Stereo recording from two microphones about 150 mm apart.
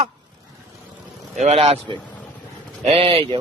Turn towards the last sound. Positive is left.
turn(degrees=-35)  # may be behind; listen again after turning